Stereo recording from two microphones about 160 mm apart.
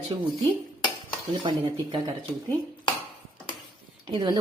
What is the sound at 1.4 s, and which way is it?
Speech, 30° right (ahead or behind).